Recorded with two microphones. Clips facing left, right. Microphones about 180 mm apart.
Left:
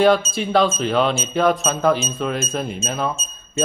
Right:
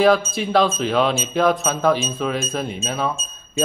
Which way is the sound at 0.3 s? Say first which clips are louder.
Even; centre (ahead or behind).